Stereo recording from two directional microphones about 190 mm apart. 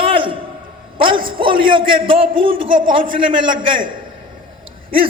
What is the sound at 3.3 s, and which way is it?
Speech, 25° right (ahead or behind).